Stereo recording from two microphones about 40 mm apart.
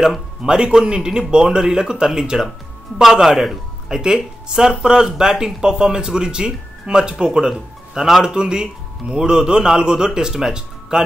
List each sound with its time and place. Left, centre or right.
0.4 s a man's voice: centre
4.0 s speech: centre